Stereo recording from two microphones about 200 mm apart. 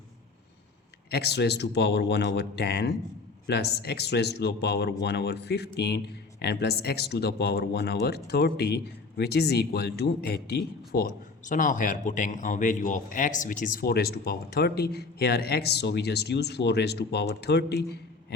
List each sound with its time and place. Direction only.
1.1 s speech: 55° left (ahead or behind)